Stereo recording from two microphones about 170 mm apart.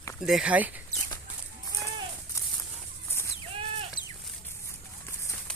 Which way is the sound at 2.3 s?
20° left (ahead or behind).